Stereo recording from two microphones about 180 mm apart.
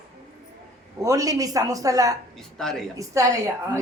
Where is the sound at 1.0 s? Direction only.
20° right (ahead or behind).